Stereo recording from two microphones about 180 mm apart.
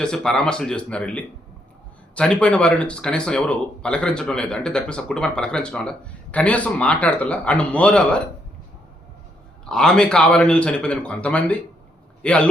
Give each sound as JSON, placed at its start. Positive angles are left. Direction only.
{"t": 0.0, "sound": "speech", "side_deg": 5}
{"t": 9.6, "sound": "speech", "side_deg": 5}